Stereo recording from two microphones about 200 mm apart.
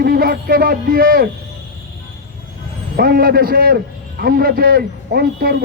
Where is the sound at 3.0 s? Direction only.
50° right (ahead or behind).